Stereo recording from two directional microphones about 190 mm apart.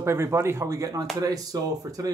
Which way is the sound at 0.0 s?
15° right (ahead or behind).